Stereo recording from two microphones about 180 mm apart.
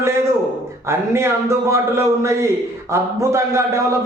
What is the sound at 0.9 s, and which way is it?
A man's voice, 15° right (ahead or behind).